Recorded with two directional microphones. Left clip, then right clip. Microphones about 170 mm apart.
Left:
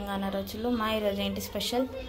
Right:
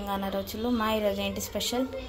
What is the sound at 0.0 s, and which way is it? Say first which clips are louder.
A woman's voice: right 2 dB; 5° right (ahead or behind).